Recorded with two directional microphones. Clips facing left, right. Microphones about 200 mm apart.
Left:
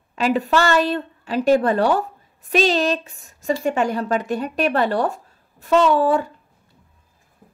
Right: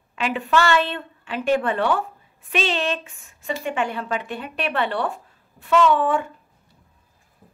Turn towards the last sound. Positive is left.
turn(degrees=35)  # may be behind; listen again after turning